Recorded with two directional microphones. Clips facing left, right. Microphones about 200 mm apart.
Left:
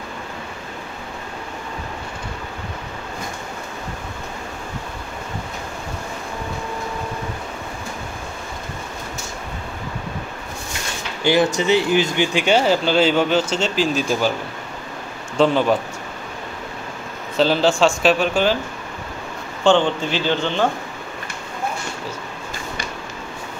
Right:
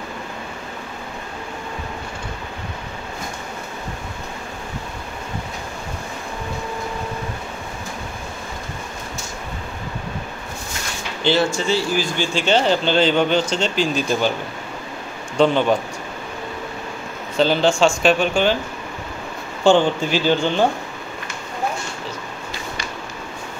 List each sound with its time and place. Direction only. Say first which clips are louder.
11.2 s speech: left 2 dB; 15° left (ahead or behind)
15.3 s speech: even; centre (ahead or behind)
17.4 s speech: even; centre (ahead or behind)
19.6 s a man's voice: right 1 dB; 10° right (ahead or behind)